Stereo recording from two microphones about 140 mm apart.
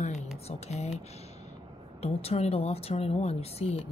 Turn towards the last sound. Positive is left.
turn(degrees=45)  # may be behind; listen again after turning